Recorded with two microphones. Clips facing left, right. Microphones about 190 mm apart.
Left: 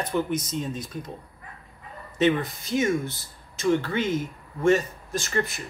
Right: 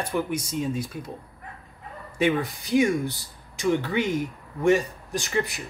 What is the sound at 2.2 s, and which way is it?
Speech, 10° right (ahead or behind).